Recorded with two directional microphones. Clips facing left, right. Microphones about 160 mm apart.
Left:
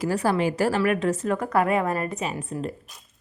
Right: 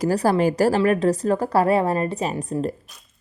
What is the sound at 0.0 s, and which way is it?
A woman's voice, 40° right (ahead or behind).